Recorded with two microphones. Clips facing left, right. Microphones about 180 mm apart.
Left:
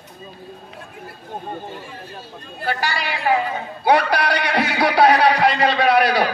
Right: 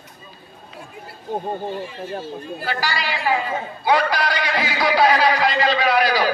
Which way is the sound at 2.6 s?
55° left (ahead or behind).